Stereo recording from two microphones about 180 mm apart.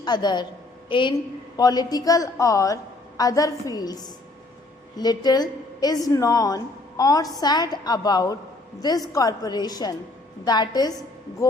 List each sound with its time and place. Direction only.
0.0 s a woman's voice: 25° left (ahead or behind)